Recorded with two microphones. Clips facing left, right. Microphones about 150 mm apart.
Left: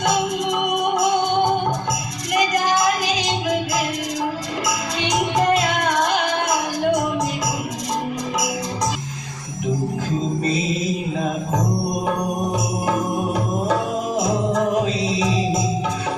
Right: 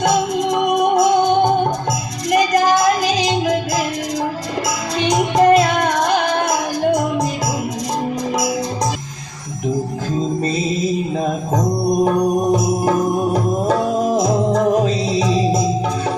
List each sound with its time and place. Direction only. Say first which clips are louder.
0.5 s music: right 7 dB; 35° right (ahead or behind)
2.3 s music: right 5 dB; 35° right (ahead or behind)
4.9 s music: right 6 dB; 35° right (ahead or behind)
12.0 s music: right 7 dB; 40° right (ahead or behind)